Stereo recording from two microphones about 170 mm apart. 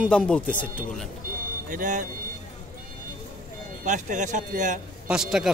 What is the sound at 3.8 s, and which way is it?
Speech, 45° right (ahead or behind).